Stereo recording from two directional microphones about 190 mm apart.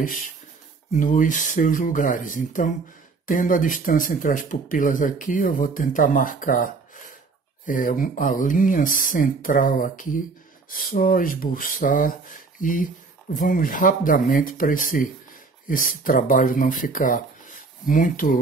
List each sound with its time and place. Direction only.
0.9 s speech: 45° left (ahead or behind)